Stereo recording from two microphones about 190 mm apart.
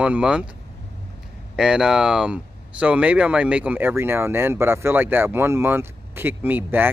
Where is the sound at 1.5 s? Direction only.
5° right (ahead or behind).